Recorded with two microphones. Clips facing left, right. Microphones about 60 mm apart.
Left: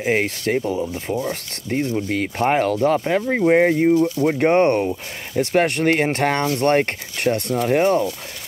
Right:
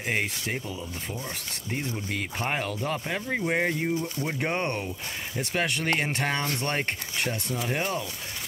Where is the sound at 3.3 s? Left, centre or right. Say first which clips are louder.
Left 11 dB; left.